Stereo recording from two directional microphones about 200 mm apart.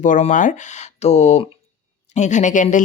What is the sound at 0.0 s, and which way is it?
Speech, 40° left (ahead or behind).